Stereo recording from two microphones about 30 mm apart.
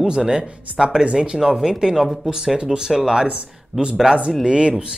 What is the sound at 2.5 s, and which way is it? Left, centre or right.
Speech, right.